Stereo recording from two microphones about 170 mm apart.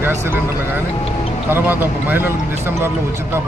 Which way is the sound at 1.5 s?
10° right (ahead or behind).